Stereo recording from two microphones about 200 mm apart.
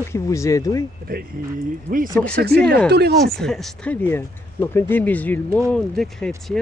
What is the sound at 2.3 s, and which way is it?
Speech, 55° right (ahead or behind).